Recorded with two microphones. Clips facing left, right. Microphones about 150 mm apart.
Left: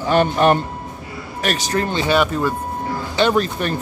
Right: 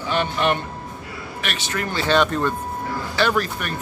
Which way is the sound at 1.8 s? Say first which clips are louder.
Left 4 dB; 20° left (ahead or behind).